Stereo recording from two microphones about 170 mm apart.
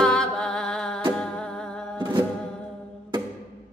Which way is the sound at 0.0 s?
5° left (ahead or behind).